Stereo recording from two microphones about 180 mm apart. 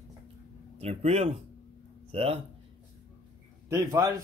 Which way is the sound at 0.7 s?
35° right (ahead or behind).